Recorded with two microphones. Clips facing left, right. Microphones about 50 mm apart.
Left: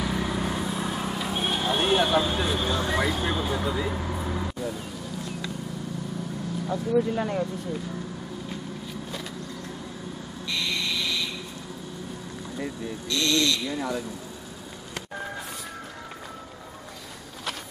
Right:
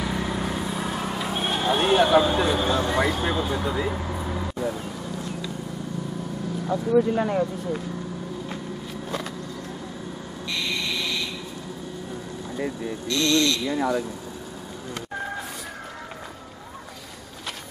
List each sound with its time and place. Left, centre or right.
0.0 s vehicle: centre
4.6 s speech: centre
6.9 s speech: centre
12.5 s speech: centre